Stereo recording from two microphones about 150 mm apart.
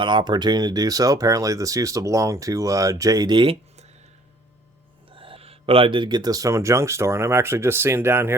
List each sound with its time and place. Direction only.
0.0 s speech: 30° right (ahead or behind)
5.1 s speech: 35° right (ahead or behind); by 8.4 s 15° right (ahead or behind)